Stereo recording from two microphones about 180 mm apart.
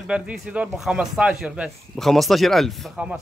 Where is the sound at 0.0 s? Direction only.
5° right (ahead or behind).